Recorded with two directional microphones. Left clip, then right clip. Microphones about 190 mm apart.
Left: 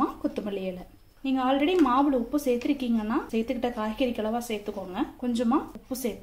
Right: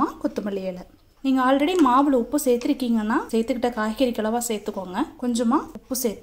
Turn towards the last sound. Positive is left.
turn(degrees=-25)  # may be behind; listen again after turning